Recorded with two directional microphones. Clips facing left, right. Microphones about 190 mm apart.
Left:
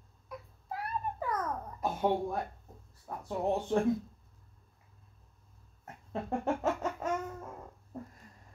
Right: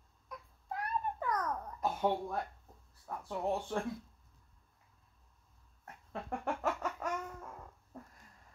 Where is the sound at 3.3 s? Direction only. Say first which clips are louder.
Left 5 dB; 20° left (ahead or behind).